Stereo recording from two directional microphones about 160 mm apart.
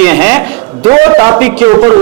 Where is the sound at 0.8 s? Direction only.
25° right (ahead or behind).